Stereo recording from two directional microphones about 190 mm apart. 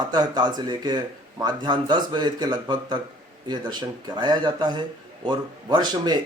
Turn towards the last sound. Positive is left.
turn(degrees=-20)  # may be behind; listen again after turning